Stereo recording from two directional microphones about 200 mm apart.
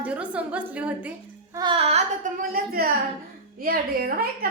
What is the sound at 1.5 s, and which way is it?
Child singing, 25° right (ahead or behind).